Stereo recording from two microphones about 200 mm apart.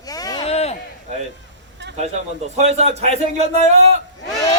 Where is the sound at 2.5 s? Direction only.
35° right (ahead or behind).